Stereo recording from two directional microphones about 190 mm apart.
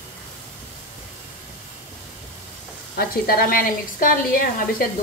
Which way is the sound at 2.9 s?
50° left (ahead or behind).